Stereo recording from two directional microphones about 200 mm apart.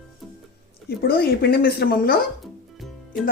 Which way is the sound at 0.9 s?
50° left (ahead or behind).